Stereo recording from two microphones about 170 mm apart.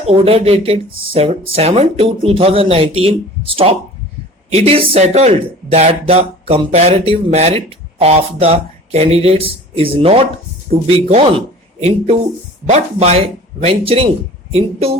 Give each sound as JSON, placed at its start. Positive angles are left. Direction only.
{"t": 0.0, "sound": "a man's voice", "side_deg": -35}